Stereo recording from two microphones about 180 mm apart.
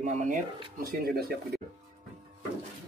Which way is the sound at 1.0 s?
60° right (ahead or behind).